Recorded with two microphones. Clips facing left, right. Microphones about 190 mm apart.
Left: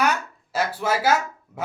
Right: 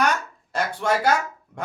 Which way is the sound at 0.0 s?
5° left (ahead or behind).